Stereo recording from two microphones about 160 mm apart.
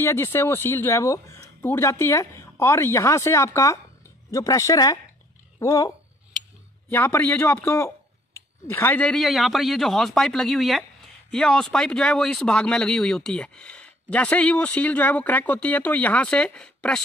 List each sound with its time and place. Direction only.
0.0 s speech: 15° left (ahead or behind)